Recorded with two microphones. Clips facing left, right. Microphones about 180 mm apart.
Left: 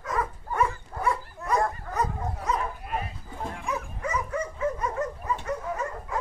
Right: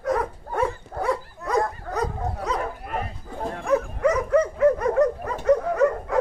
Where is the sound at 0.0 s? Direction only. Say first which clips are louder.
Right 6 dB; 70° right (ahead or behind).